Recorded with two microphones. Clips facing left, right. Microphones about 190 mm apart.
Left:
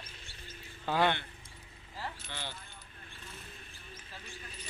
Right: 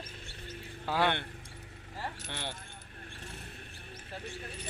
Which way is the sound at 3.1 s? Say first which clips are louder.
Right 4 dB; 65° right (ahead or behind).